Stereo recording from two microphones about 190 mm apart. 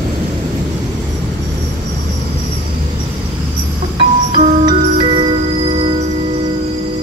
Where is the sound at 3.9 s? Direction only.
30° right (ahead or behind).